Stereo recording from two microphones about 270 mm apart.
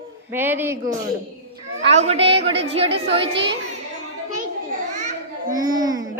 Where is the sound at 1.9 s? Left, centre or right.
Right.